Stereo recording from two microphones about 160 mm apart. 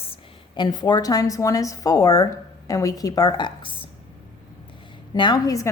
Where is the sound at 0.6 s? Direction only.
25° left (ahead or behind).